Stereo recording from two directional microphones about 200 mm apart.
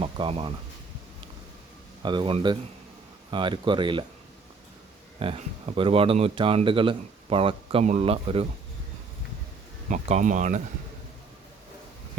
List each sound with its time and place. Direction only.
0.0 s speech: 30° right (ahead or behind)
2.0 s speech: 25° right (ahead or behind)
5.2 s speech: 25° right (ahead or behind)
9.9 s speech: 35° right (ahead or behind)